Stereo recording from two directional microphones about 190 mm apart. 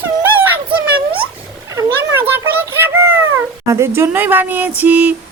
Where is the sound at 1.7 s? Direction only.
15° right (ahead or behind).